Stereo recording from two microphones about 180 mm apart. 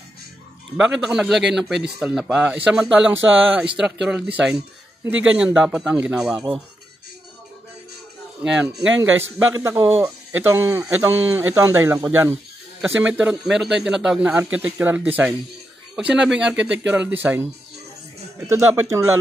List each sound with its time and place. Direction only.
0.7 s speech: 5° right (ahead or behind)
8.4 s speech: 10° right (ahead or behind)
8.7 s speech: 90° right
9.4 s speech: 15° right (ahead or behind)